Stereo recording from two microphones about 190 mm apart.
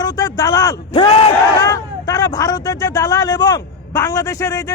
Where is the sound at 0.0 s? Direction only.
20° left (ahead or behind).